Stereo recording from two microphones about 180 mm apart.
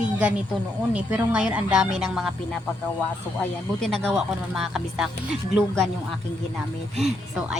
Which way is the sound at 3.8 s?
5° left (ahead or behind).